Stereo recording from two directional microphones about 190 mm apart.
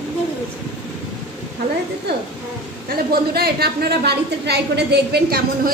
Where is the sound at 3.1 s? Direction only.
55° right (ahead or behind).